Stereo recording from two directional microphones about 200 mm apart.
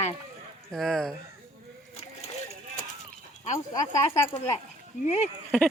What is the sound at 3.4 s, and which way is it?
Speech, 35° left (ahead or behind).